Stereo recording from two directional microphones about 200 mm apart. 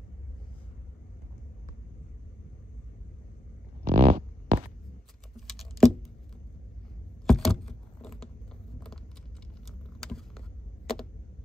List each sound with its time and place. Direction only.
3.8 s a sound: 40° right (ahead or behind)
5.5 s computer keyboard: centre (ahead or behind)
7.2 s keys jangling: centre (ahead or behind)
8.7 s vehicle: 5° left (ahead or behind)